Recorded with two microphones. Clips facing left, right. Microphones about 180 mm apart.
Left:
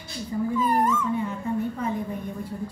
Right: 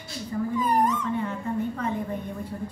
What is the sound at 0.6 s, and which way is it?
Dog, 15° right (ahead or behind).